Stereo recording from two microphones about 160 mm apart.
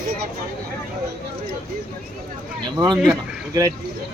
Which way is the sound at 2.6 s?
25° right (ahead or behind).